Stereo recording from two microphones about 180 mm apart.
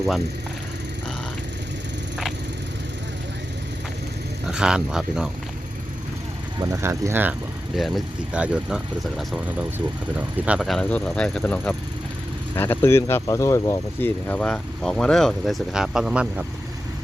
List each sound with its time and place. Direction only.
4.5 s speech: 5° right (ahead or behind)
6.6 s speech: 20° right (ahead or behind)
7.8 s speech: centre (ahead or behind)